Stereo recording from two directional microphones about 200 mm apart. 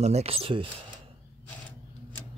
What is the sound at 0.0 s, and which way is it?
Speech, 30° right (ahead or behind).